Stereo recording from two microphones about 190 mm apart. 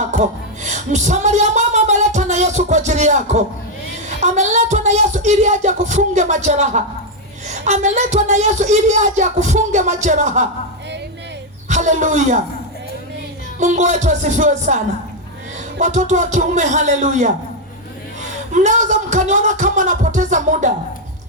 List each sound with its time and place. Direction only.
0.1 s speech: 40° right (ahead or behind)
11.7 s speech: 40° right (ahead or behind)
13.6 s speech: 40° right (ahead or behind)
15.8 s speech: 40° right (ahead or behind)
18.5 s speech: 40° right (ahead or behind)